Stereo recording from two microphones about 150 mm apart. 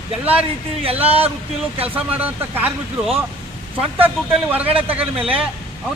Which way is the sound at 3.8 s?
10° right (ahead or behind).